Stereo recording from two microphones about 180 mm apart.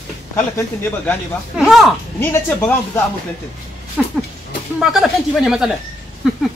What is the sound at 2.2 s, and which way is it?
Speech, 15° left (ahead or behind).